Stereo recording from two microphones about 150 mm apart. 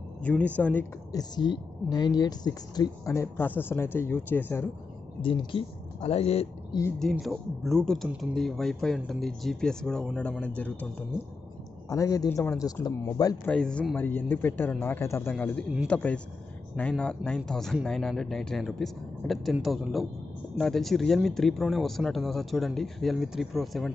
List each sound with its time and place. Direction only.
0.2 s speech: 10° left (ahead or behind)
1.1 s speech: 30° left (ahead or behind); by 4.6 s 15° left (ahead or behind)
5.2 s speech: 35° left (ahead or behind)
7.0 s speech: centre (ahead or behind)
11.9 s speech: 20° left (ahead or behind)
13.5 s speech: 5° left (ahead or behind)